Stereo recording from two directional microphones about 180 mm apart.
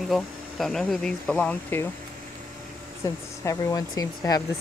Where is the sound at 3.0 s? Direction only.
20° left (ahead or behind).